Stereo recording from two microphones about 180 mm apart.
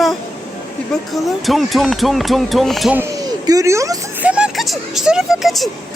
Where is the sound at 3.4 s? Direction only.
20° right (ahead or behind).